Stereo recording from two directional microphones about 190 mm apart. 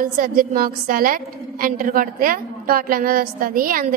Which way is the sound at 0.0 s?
45° right (ahead or behind).